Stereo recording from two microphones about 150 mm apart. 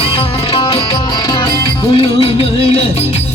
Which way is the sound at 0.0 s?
40° left (ahead or behind).